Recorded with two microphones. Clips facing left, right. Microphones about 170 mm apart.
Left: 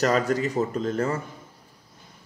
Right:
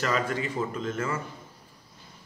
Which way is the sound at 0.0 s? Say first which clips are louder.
Left 6 dB; 40° left (ahead or behind).